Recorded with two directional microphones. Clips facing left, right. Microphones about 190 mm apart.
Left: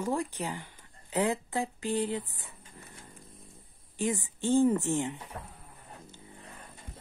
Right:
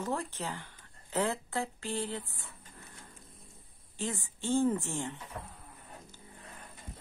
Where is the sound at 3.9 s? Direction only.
15° left (ahead or behind).